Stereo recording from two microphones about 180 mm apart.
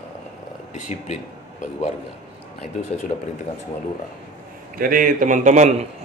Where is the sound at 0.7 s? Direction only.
45° left (ahead or behind).